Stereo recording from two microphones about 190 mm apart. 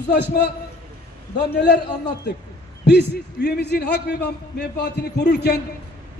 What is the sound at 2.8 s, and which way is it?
A man's voice, 60° left (ahead or behind).